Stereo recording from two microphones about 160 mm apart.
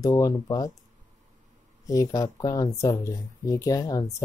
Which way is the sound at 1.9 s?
20° left (ahead or behind).